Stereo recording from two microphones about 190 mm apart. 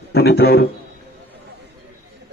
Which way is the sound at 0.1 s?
55° left (ahead or behind).